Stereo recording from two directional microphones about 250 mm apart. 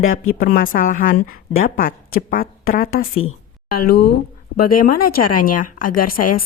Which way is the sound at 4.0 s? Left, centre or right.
Left.